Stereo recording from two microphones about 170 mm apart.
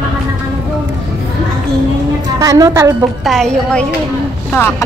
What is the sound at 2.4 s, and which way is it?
Speech, 20° right (ahead or behind).